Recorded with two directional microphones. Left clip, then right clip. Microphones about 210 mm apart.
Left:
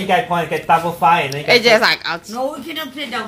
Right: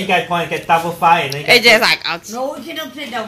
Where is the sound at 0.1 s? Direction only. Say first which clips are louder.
Even; 5° left (ahead or behind).